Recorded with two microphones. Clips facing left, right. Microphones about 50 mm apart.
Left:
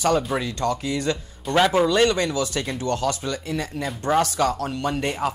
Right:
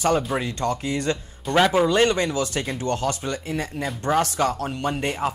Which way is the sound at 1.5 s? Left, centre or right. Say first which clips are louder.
Even; centre.